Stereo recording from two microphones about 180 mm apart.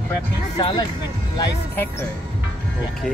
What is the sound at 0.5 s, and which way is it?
Speech, 25° left (ahead or behind).